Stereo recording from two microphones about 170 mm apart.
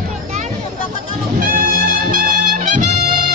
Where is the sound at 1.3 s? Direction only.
55° right (ahead or behind).